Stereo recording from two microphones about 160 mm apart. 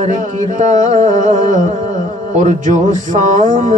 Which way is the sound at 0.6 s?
50° right (ahead or behind).